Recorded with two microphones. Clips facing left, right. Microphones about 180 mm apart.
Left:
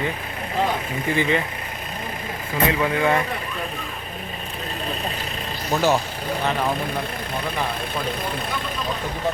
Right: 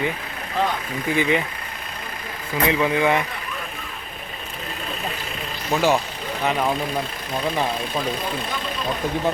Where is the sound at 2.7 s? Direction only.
15° right (ahead or behind).